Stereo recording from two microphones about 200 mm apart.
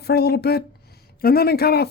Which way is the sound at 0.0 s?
55° left (ahead or behind).